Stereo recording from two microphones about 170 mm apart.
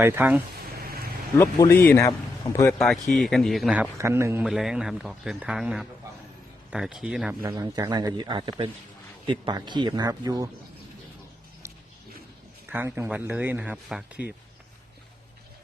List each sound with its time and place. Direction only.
0.0 s speech: 10° right (ahead or behind)
1.4 s a man's voice: 20° left (ahead or behind)
2.7 s speech: 5° left (ahead or behind)
3.9 s speech: 15° right (ahead or behind)
4.4 s speech: centre (ahead or behind)
7.4 s speech: 20° right (ahead or behind)
12.7 s speech: 10° right (ahead or behind)